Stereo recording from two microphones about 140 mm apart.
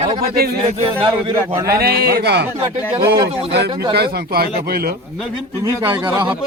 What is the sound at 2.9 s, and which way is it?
Speech, 25° right (ahead or behind).